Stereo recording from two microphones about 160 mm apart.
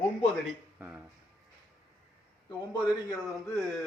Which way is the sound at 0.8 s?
10° right (ahead or behind).